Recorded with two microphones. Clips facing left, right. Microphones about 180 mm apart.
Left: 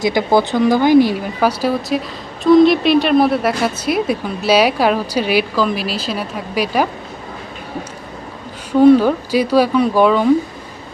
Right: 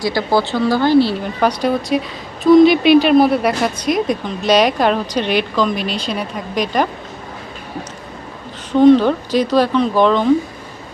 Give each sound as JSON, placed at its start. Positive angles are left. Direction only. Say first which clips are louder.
{"t": 0.0, "sound": "speech", "louder": "left 2 dB", "side_deg": 20}
{"t": 1.2, "sound": "speech", "louder": "even", "side_deg": 5}
{"t": 8.7, "sound": "speech", "louder": "even", "side_deg": 10}